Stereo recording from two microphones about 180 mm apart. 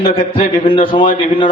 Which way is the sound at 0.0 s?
35° left (ahead or behind).